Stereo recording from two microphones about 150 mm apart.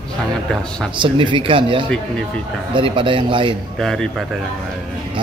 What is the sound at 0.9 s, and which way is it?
Speech, 35° right (ahead or behind).